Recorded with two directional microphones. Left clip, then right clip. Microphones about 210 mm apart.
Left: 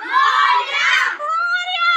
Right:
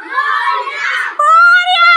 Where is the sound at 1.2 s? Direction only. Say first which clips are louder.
Right 12 dB; 45° right (ahead or behind).